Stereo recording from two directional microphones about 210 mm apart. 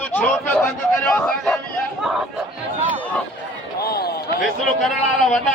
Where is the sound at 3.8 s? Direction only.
50° left (ahead or behind).